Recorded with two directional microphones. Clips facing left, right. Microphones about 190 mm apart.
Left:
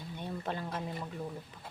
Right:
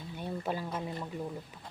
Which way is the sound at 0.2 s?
5° right (ahead or behind).